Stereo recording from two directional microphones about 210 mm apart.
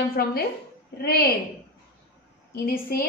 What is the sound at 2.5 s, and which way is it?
Speech, 45° left (ahead or behind).